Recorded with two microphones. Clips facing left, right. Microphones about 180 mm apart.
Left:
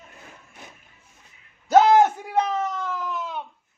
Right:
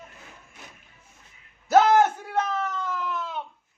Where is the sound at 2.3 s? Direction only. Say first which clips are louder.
Left 3 dB; 15° left (ahead or behind).